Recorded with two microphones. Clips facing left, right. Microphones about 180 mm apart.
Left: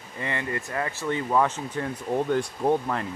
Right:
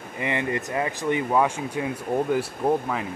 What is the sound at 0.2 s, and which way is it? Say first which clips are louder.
Speech: right 4 dB; 20° right (ahead or behind).